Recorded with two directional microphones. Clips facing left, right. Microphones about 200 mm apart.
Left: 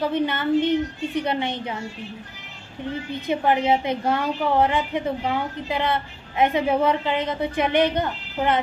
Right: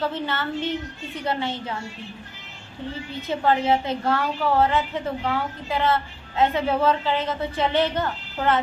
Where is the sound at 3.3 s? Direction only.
15° left (ahead or behind).